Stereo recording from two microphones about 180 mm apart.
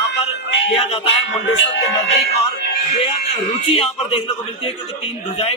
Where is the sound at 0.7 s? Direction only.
35° left (ahead or behind).